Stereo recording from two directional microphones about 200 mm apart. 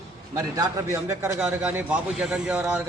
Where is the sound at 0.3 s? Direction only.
15° right (ahead or behind).